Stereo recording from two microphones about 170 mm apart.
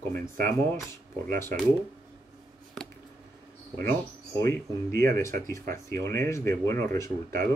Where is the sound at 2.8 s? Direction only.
5° left (ahead or behind).